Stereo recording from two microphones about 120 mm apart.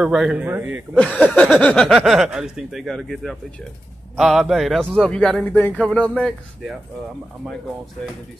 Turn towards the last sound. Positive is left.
turn(degrees=-5)  # may be behind; listen again after turning